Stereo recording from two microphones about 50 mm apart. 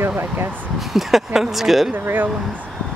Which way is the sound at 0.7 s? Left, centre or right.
Centre.